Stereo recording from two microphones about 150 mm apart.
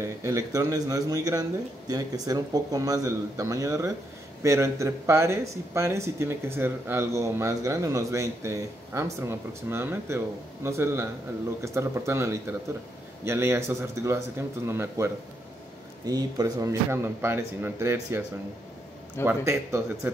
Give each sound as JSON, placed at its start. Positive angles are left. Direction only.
{"t": 0.0, "sound": "a man's voice", "side_deg": -20}
{"t": 16.1, "sound": "speech", "side_deg": -25}
{"t": 19.2, "sound": "speech", "side_deg": -20}